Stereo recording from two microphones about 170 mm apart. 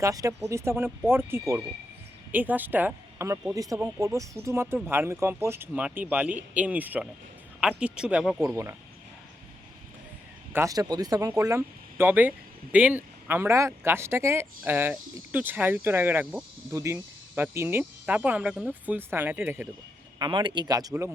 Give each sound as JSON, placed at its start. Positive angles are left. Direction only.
{"t": 0.0, "sound": "a woman's voice", "side_deg": -20}
{"t": 8.4, "sound": "speech", "side_deg": -15}
{"t": 10.5, "sound": "speech", "side_deg": -20}
{"t": 20.1, "sound": "speech", "side_deg": -25}